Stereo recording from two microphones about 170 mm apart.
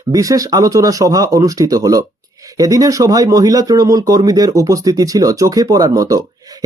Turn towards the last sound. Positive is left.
turn(degrees=-20)  # may be behind; listen again after turning